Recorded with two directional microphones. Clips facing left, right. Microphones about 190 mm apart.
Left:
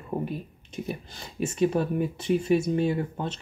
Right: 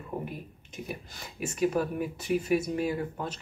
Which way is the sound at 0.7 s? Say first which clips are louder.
Left 5 dB; 30° left (ahead or behind).